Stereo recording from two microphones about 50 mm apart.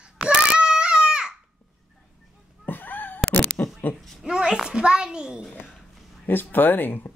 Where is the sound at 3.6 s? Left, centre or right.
Left.